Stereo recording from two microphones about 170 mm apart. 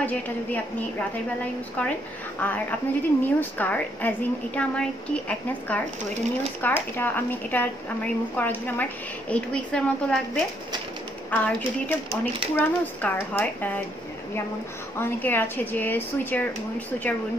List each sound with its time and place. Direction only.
0.0 s a woman's voice: 10° left (ahead or behind)
15.0 s a woman's voice: 15° left (ahead or behind)